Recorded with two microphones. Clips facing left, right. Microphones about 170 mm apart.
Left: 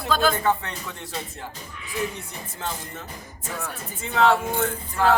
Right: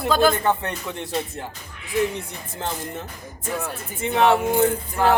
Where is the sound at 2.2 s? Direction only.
25° right (ahead or behind).